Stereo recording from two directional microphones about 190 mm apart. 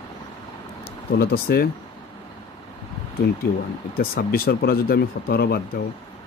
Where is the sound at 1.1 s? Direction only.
55° left (ahead or behind).